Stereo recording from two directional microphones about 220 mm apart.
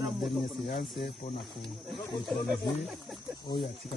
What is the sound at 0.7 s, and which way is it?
Speech, 50° left (ahead or behind).